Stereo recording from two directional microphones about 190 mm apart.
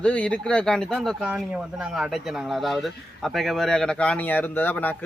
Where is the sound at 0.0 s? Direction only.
5° left (ahead or behind).